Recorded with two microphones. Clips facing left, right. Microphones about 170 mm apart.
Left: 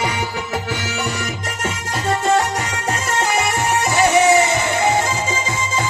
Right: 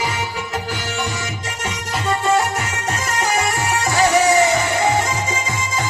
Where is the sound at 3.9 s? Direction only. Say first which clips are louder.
Left 1 dB; 20° left (ahead or behind).